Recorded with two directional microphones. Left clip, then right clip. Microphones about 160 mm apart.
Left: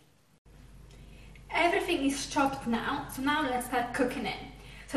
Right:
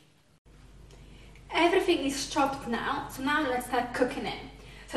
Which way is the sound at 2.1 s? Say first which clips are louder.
Right 1 dB; 15° right (ahead or behind).